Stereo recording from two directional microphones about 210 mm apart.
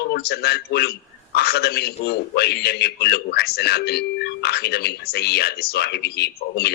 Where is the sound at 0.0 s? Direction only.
50° left (ahead or behind).